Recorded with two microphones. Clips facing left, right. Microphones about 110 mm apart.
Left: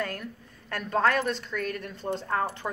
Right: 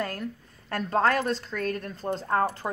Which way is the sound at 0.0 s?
30° right (ahead or behind).